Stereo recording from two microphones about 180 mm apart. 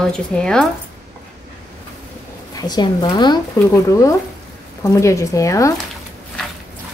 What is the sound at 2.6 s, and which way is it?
Speech, 25° left (ahead or behind).